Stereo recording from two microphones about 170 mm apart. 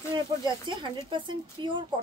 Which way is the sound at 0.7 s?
30° right (ahead or behind).